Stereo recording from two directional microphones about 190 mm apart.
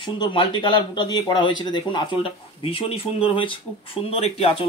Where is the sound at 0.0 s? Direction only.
25° left (ahead or behind).